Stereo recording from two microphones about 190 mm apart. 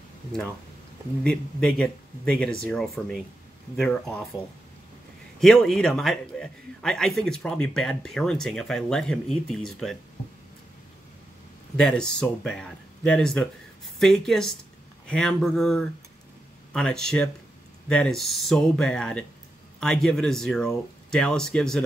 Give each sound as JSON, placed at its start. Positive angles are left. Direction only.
{"t": 1.2, "sound": "a man's voice", "side_deg": 5}
{"t": 5.4, "sound": "a man's voice", "side_deg": 0}
{"t": 11.7, "sound": "a man's voice", "side_deg": 5}